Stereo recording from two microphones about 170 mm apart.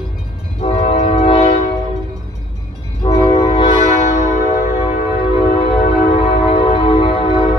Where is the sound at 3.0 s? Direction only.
30° left (ahead or behind).